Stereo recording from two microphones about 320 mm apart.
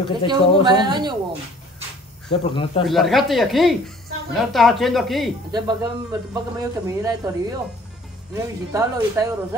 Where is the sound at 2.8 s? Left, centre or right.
Centre.